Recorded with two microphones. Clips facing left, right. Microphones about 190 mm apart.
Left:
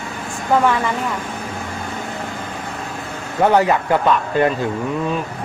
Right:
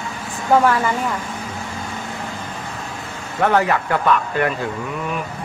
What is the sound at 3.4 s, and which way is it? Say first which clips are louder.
Speech: left 3 dB; 20° left (ahead or behind).